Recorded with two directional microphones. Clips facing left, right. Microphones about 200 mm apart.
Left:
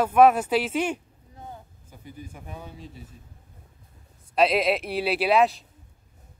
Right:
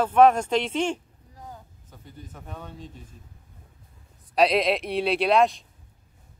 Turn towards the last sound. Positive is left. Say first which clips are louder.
# even
turn(degrees=5)  # may be behind; listen again after turning